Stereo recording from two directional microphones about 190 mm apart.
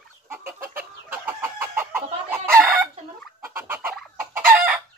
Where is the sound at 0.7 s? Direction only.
10° right (ahead or behind).